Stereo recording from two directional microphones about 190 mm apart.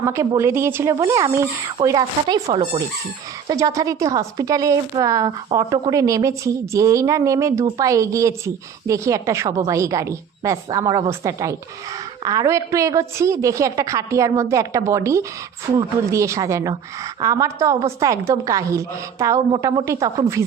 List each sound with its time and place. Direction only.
0.0 s a woman's voice: 15° right (ahead or behind)